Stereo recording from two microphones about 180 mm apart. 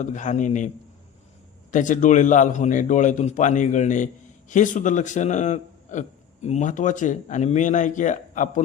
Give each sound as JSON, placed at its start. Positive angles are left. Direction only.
{"t": 0.0, "sound": "a man's voice", "side_deg": 45}
{"t": 1.7, "sound": "a man's voice", "side_deg": 45}